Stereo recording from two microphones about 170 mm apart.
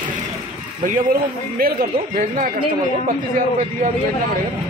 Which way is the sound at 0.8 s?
55° right (ahead or behind).